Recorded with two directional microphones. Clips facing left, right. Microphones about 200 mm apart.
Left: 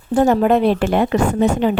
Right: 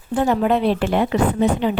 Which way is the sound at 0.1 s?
45° left (ahead or behind).